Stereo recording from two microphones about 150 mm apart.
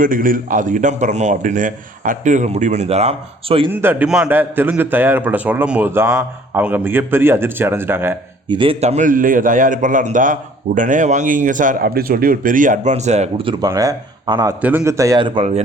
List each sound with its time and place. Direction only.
0.0 s a man's voice: 65° right (ahead or behind); by 3.7 s 40° right (ahead or behind)
3.7 s a man's voice: 15° right (ahead or behind)
8.4 s a man's voice: 35° right (ahead or behind)
13.7 s speech: 25° right (ahead or behind)
14.6 s speech: 10° right (ahead or behind)